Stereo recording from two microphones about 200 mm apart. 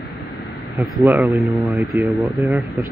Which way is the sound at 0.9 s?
Centre (ahead or behind).